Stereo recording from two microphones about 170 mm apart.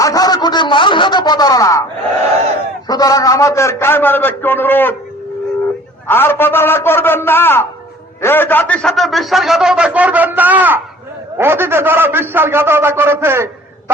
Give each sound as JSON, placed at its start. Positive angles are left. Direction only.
{"t": 0.0, "sound": "a sound", "side_deg": 20}
{"t": 2.8, "sound": "a man's voice", "side_deg": 25}
{"t": 6.1, "sound": "a man's voice", "side_deg": 10}